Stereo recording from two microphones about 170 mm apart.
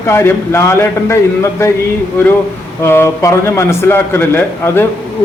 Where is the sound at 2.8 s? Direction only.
15° left (ahead or behind).